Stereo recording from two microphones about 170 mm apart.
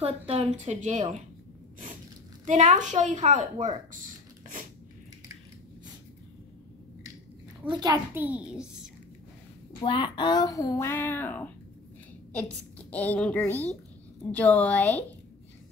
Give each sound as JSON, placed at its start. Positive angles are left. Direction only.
{"t": 0.0, "sound": "a woman's voice", "side_deg": -40}
{"t": 2.4, "sound": "a woman's voice", "side_deg": -45}
{"t": 7.6, "sound": "a child's voice", "side_deg": -25}
{"t": 9.8, "sound": "a woman's voice", "side_deg": 30}